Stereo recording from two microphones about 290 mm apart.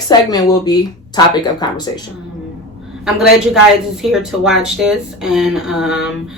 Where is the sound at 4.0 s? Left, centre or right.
Centre.